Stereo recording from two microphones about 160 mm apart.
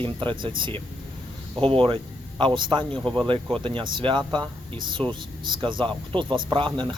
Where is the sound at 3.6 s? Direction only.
30° right (ahead or behind).